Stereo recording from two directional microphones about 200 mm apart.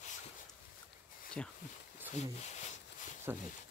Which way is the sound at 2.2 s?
35° left (ahead or behind).